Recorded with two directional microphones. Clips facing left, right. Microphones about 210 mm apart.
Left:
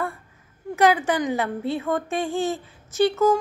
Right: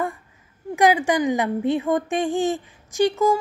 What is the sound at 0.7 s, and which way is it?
A woman's voice, 15° right (ahead or behind).